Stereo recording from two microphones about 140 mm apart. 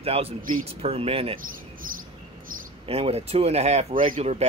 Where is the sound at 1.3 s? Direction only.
80° right.